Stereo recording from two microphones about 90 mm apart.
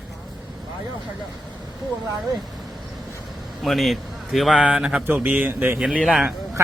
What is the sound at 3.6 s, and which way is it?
A man's voice, centre (ahead or behind).